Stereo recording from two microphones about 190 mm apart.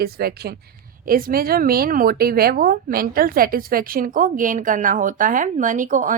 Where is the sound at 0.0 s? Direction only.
55° right (ahead or behind).